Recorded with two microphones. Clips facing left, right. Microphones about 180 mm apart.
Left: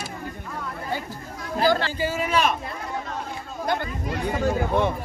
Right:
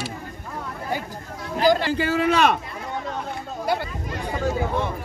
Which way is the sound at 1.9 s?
65° right (ahead or behind).